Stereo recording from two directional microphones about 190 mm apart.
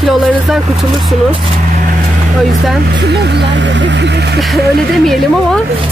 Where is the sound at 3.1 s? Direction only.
60° right (ahead or behind).